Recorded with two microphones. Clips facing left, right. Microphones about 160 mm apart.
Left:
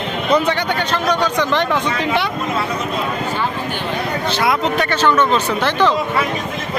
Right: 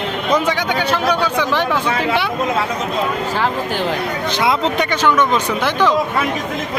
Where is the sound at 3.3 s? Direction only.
90° right.